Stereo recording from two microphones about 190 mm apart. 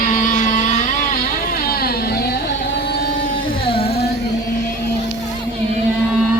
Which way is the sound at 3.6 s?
30° left (ahead or behind).